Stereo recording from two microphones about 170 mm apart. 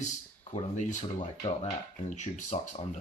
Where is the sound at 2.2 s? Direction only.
45° left (ahead or behind).